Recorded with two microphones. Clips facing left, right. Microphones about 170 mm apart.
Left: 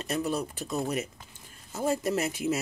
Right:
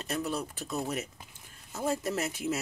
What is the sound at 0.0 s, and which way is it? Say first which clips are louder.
Speech: left 3 dB; centre (ahead or behind).